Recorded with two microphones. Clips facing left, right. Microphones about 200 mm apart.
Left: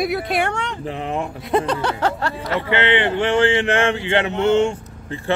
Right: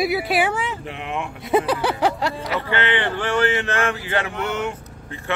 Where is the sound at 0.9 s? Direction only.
35° left (ahead or behind).